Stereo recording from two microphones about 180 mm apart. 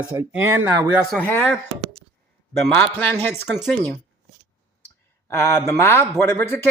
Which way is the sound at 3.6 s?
Centre (ahead or behind).